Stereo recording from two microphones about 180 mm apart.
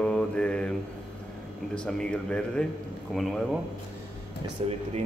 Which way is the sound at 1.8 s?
5° left (ahead or behind).